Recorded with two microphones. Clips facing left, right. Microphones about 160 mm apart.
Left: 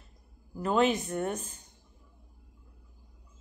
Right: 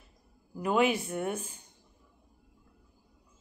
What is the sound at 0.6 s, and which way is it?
Speech, 10° right (ahead or behind).